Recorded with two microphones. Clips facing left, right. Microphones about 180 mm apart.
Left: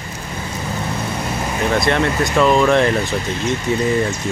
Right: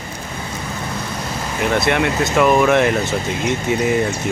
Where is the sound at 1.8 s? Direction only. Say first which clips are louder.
Even; 10° right (ahead or behind).